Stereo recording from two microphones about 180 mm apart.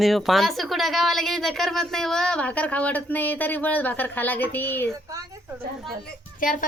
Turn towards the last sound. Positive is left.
turn(degrees=50)  # may be behind; listen again after turning